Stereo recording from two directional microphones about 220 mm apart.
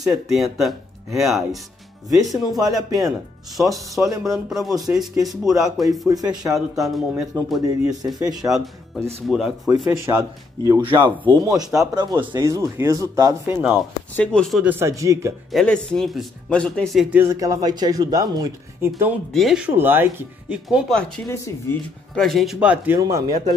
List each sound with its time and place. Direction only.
0.3 s speech: centre (ahead or behind)
4.1 s a man's voice: 15° right (ahead or behind)
4.5 s speech: centre (ahead or behind)
6.0 s a man's voice: 15° right (ahead or behind)
6.4 s speech: centre (ahead or behind)
7.6 s a man's voice: 15° right (ahead or behind)
8.5 s a man's voice: centre (ahead or behind)
14.1 s a man's voice: 5° left (ahead or behind); by 15.3 s 15° right (ahead or behind)
15.5 s a man's voice: 5° left (ahead or behind)
21.3 s speech: 10° left (ahead or behind); by 22.9 s 5° right (ahead or behind)
22.9 s a man's voice: 15° right (ahead or behind)